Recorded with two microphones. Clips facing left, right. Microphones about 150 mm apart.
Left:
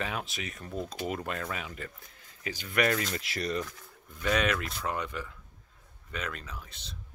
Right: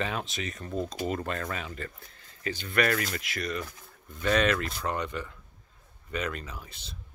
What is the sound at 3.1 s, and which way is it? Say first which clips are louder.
Speech: left 1 dB; 35° left (ahead or behind).